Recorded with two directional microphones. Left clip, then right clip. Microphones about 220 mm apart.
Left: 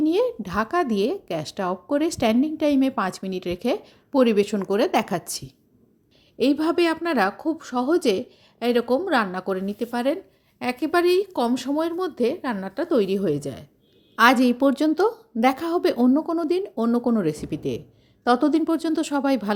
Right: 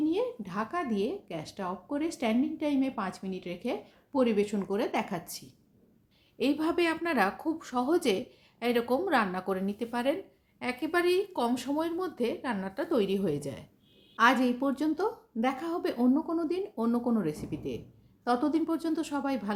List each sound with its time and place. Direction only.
0.0 s a woman's voice: 40° left (ahead or behind); by 13.7 s 25° left (ahead or behind)
14.2 s speech: 40° left (ahead or behind)